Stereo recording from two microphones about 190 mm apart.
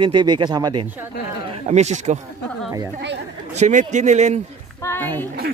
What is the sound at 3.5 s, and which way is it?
Speech, 40° right (ahead or behind).